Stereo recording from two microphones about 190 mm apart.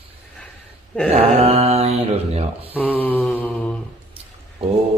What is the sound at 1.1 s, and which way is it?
Speech, 30° right (ahead or behind).